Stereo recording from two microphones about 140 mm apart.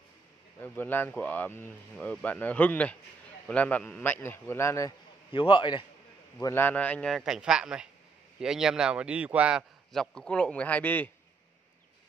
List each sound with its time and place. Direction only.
0.6 s speech: 15° left (ahead or behind)
5.3 s a man's voice: 35° left (ahead or behind)
6.4 s a man's voice: 15° left (ahead or behind); by 9.7 s 10° right (ahead or behind)
9.9 s speech: 5° left (ahead or behind)